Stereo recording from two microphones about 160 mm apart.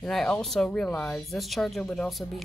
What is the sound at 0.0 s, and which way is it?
Speech, centre (ahead or behind).